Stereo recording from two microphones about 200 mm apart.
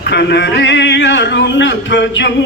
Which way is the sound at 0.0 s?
55° left (ahead or behind).